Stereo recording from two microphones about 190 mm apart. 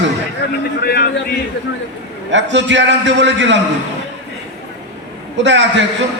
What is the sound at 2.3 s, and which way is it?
A man's voice, 70° right (ahead or behind).